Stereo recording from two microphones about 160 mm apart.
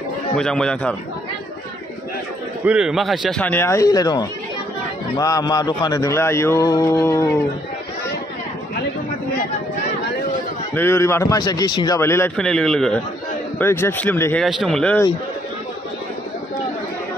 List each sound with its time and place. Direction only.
0.4 s a man's voice: 5° left (ahead or behind)
2.6 s a man's voice: 5° right (ahead or behind); by 7.2 s 15° left (ahead or behind)
10.7 s a man's voice: 15° left (ahead or behind)
12.4 s a man's voice: 5° left (ahead or behind)
13.6 s speech: 15° left (ahead or behind)
14.4 s a man's voice: centre (ahead or behind)